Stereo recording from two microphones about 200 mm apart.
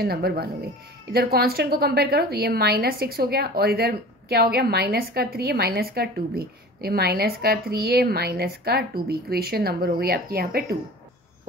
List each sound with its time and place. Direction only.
0.0 s a woman's voice: 50° right (ahead or behind)